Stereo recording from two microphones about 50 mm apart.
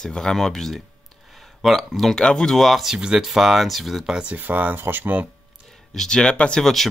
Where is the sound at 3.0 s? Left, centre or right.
Centre.